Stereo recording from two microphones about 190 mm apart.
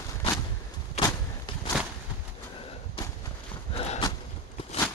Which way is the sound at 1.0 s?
35° left (ahead or behind).